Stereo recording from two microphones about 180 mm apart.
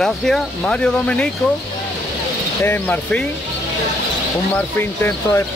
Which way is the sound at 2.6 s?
10° left (ahead or behind).